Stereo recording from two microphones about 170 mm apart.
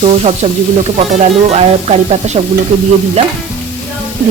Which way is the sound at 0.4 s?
35° right (ahead or behind).